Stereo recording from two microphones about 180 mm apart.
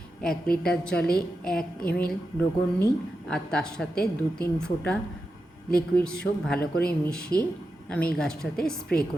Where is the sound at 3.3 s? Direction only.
5° left (ahead or behind).